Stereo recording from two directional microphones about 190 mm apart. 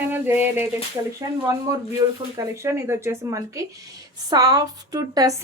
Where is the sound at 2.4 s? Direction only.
15° right (ahead or behind).